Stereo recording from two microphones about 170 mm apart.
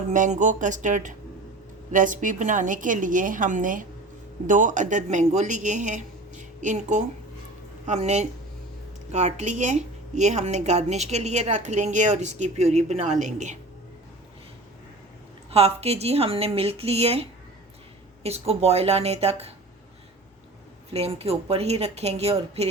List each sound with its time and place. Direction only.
0.1 s a woman's voice: 45° right (ahead or behind)
15.4 s a woman's voice: 35° right (ahead or behind)
20.9 s a woman's voice: 35° right (ahead or behind)